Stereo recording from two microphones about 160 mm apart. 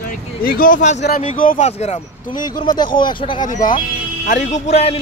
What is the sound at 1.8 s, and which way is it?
Speech, 45° left (ahead or behind).